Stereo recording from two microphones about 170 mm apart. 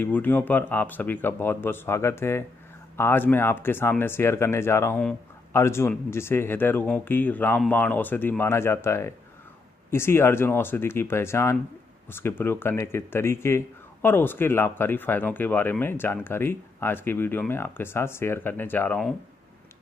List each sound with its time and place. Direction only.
0.0 s speech: 10° left (ahead or behind)